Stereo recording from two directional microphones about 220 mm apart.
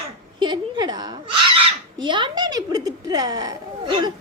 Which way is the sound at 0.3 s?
20° right (ahead or behind).